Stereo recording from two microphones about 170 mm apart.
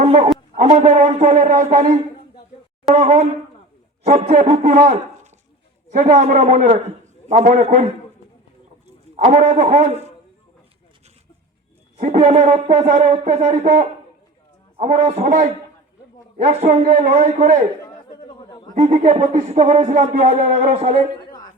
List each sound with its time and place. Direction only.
0.0 s a man's voice: 40° right (ahead or behind)
2.9 s speech: 40° right (ahead or behind)
8.9 s a man's voice: 40° right (ahead or behind)
11.9 s speech: 45° right (ahead or behind)
14.8 s speech: 45° right (ahead or behind)
16.4 s speech: 40° right (ahead or behind)
18.1 s a sound: 25° left (ahead or behind)
18.7 s speech: 45° right (ahead or behind)